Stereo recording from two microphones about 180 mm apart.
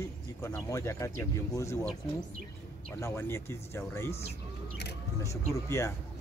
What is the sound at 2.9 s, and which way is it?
Speech, 15° left (ahead or behind).